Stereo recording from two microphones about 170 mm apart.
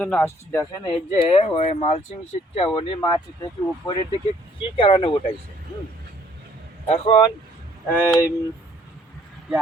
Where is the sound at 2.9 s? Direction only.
20° left (ahead or behind).